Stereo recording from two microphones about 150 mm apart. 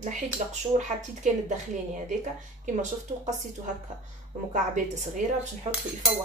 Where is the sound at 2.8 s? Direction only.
55° right (ahead or behind).